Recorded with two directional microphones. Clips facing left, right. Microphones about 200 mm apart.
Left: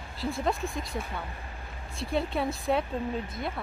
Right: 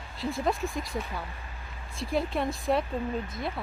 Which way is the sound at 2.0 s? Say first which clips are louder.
Even; centre (ahead or behind).